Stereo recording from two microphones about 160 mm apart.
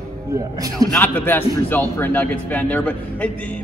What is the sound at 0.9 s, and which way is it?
Speech, 10° left (ahead or behind).